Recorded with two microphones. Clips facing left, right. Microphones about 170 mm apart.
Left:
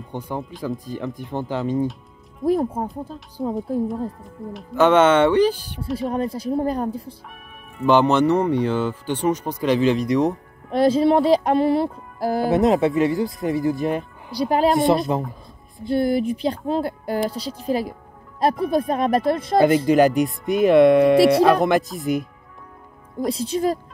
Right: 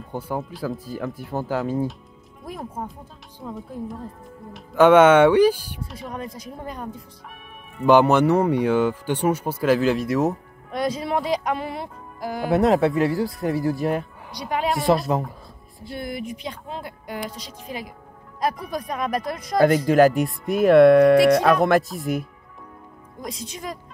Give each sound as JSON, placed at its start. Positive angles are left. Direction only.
{"t": 0.1, "sound": "speech", "side_deg": -5}
{"t": 2.4, "sound": "speech", "side_deg": 30}
{"t": 3.8, "sound": "speech", "side_deg": 0}
{"t": 4.7, "sound": "speech", "side_deg": -10}
{"t": 5.9, "sound": "speech", "side_deg": 30}
{"t": 7.8, "sound": "speech", "side_deg": -10}
{"t": 10.7, "sound": "speech", "side_deg": 30}
{"t": 12.4, "sound": "speech", "side_deg": 0}
{"t": 14.3, "sound": "speech", "side_deg": 30}
{"t": 14.7, "sound": "speech", "side_deg": 0}
{"t": 15.9, "sound": "speech", "side_deg": 30}
{"t": 19.9, "sound": "speech", "side_deg": 0}
{"t": 23.2, "sound": "speech", "side_deg": 30}